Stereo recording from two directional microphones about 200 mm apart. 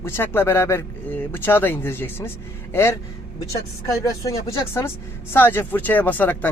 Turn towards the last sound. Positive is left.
turn(degrees=10)  # may be behind; listen again after turning